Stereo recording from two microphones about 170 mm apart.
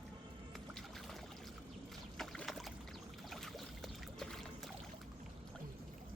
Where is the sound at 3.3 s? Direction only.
Centre (ahead or behind).